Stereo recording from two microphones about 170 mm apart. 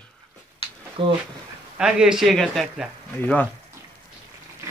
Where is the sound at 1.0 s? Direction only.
30° right (ahead or behind).